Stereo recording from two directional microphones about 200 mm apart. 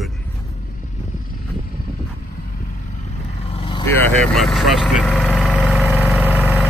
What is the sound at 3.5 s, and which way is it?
Vehicle, 25° left (ahead or behind).